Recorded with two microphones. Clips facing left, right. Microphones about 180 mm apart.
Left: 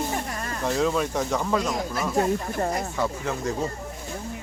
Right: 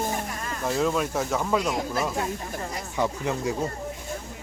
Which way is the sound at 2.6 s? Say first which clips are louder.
Left 7 dB; 50° left (ahead or behind).